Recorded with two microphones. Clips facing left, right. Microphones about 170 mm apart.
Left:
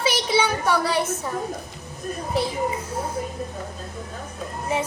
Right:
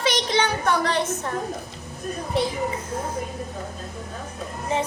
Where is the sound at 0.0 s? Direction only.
5° left (ahead or behind).